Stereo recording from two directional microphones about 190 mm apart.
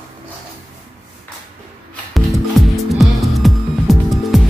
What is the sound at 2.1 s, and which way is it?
Music, centre (ahead or behind).